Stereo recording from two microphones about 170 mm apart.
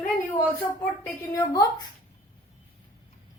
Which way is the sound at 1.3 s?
20° left (ahead or behind).